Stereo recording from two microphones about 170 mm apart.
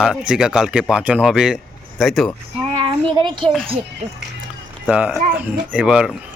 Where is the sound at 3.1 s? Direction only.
30° right (ahead or behind).